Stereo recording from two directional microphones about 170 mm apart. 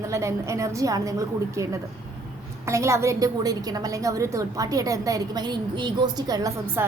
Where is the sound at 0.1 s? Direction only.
15° right (ahead or behind).